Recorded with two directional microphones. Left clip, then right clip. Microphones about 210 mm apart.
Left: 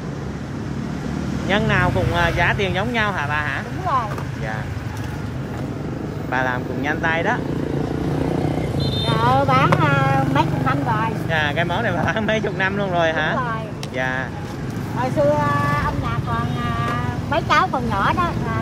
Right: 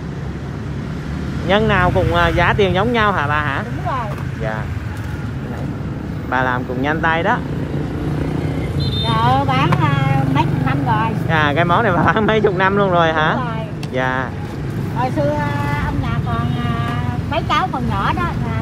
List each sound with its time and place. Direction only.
1.5 s speech: centre (ahead or behind)
6.3 s speech: centre (ahead or behind)
9.1 s vehicle: centre (ahead or behind)
11.2 s speech: 15° right (ahead or behind)
17.3 s speech: 5° left (ahead or behind)